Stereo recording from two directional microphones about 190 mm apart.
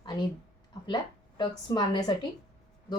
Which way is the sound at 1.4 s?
25° left (ahead or behind).